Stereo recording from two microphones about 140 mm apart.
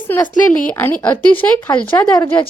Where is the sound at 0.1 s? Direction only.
15° left (ahead or behind).